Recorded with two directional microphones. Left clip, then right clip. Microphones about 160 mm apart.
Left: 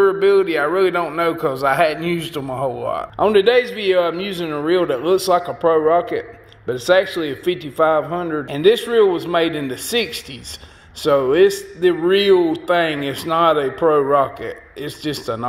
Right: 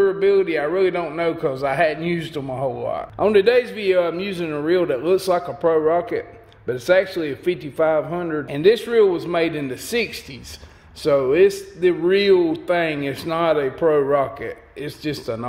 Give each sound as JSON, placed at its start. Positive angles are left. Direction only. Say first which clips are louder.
{"t": 0.0, "sound": "a man's voice", "louder": "left 3 dB", "side_deg": -5}